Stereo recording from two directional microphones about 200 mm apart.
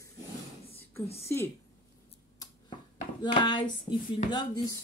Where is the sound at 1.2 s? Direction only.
10° left (ahead or behind).